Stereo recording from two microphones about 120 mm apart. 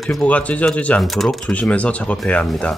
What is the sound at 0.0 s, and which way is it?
Speech, 5° left (ahead or behind).